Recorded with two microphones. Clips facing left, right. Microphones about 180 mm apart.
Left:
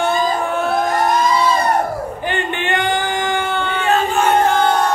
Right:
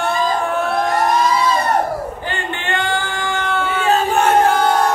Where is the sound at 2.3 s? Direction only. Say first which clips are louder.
Left 3 dB; 20° left (ahead or behind).